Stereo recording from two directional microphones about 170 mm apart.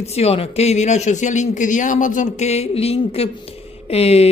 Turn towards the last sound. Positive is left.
turn(degrees=35)  # may be behind; listen again after turning